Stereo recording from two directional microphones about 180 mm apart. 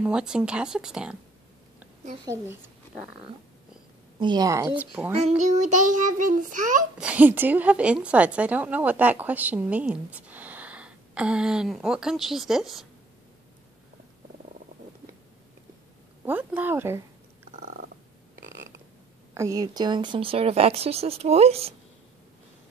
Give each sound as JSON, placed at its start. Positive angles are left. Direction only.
{"t": 0.0, "sound": "speech", "side_deg": -5}
{"t": 2.2, "sound": "a woman's voice", "side_deg": -15}
{"t": 4.2, "sound": "a woman's voice", "side_deg": -20}
{"t": 5.4, "sound": "child singing", "side_deg": -40}
{"t": 7.0, "sound": "a woman's voice", "side_deg": -10}
{"t": 16.3, "sound": "a woman's voice", "side_deg": -10}
{"t": 17.5, "sound": "a sound", "side_deg": -50}
{"t": 19.3, "sound": "speech", "side_deg": -20}